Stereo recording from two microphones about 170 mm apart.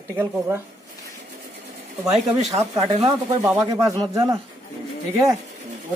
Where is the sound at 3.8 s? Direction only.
20° right (ahead or behind).